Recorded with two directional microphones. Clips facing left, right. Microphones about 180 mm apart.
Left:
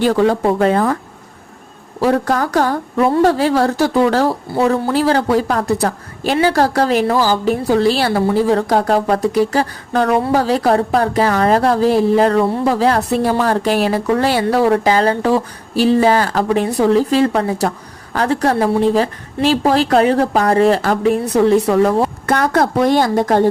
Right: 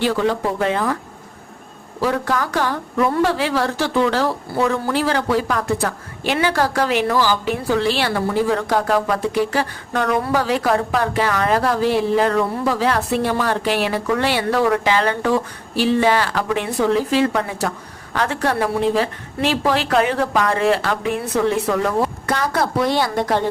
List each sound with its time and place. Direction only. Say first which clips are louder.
0.0 s speech: left 5 dB; 45° left (ahead or behind)
2.0 s speech: left 5 dB; 40° left (ahead or behind)
22.3 s speech: left 5 dB; 50° left (ahead or behind)